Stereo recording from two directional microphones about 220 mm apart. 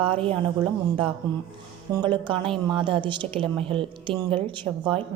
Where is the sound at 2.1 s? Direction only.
20° right (ahead or behind).